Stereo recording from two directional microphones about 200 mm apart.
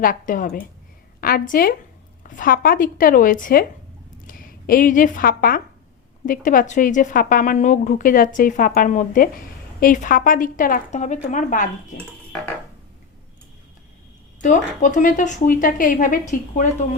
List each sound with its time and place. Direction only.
0.0 s a woman's voice: 45° left (ahead or behind)
14.4 s a woman's voice: 40° left (ahead or behind)